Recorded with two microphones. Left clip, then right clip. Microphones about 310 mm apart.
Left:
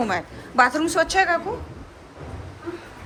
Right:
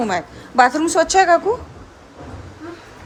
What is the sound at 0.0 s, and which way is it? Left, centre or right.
A woman's voice, centre.